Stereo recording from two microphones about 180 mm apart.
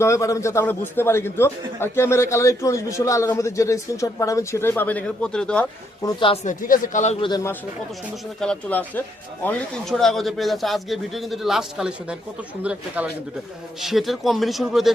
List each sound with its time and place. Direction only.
0.0 s a man's voice: 15° left (ahead or behind)
6.0 s speech: 25° left (ahead or behind)
6.4 s speech: 45° left (ahead or behind)
7.3 s speech: 20° left (ahead or behind)
8.4 s a man's voice: 5° left (ahead or behind)
13.8 s a man's voice: centre (ahead or behind)